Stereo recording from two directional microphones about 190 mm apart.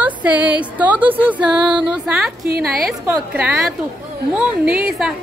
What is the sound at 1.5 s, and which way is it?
Music, 25° right (ahead or behind).